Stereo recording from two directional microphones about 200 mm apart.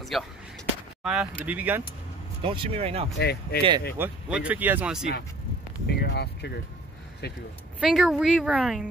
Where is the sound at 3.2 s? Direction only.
55° left (ahead or behind).